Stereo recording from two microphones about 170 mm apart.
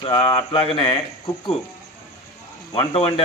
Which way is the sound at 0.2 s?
30° left (ahead or behind).